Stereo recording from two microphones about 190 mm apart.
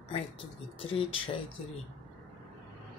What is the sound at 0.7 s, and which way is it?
Speech, 30° left (ahead or behind).